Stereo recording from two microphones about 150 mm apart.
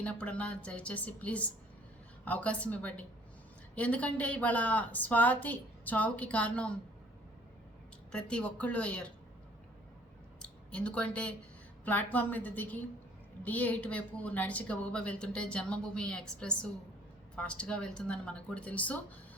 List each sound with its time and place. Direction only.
0.0 s a woman's voice: 10° left (ahead or behind)
8.1 s a woman's voice: 5° left (ahead or behind)
10.4 s a woman's voice: 10° left (ahead or behind)